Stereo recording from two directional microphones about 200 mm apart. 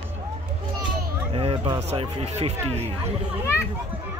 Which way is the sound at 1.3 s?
30° right (ahead or behind).